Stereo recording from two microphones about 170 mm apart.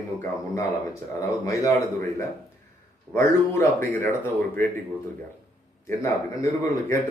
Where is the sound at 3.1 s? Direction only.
15° left (ahead or behind).